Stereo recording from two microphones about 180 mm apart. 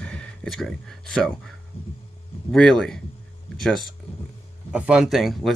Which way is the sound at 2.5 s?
5° left (ahead or behind).